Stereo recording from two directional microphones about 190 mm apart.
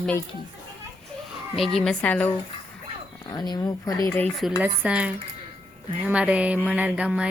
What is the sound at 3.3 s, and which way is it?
Speech, 20° left (ahead or behind).